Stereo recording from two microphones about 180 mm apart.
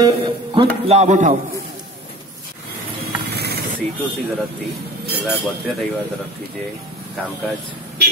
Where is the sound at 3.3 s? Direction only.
65° right (ahead or behind).